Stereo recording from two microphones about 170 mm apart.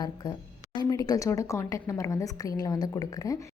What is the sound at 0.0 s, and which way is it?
A woman's voice, 25° left (ahead or behind).